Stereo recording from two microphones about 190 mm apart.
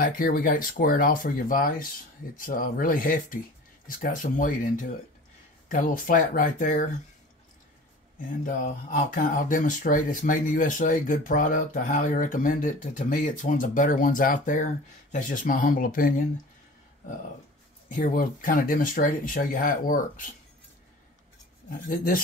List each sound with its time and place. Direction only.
0.0 s speech: 50° left (ahead or behind)
8.5 s speech: 45° left (ahead or behind)
17.8 s speech: 45° left (ahead or behind)
21.6 s speech: 50° left (ahead or behind)